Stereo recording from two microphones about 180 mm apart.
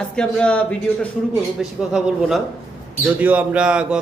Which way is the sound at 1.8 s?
Centre (ahead or behind).